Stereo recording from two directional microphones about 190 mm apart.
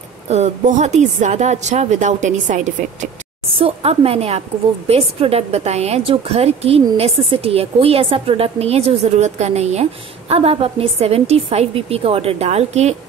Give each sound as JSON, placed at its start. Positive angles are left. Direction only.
{"t": 0.3, "sound": "a woman's voice", "side_deg": -40}